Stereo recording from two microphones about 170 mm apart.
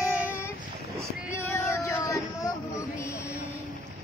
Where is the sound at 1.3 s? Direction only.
15° left (ahead or behind).